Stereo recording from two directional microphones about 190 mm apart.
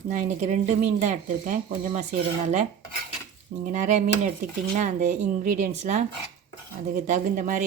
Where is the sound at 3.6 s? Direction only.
40° right (ahead or behind).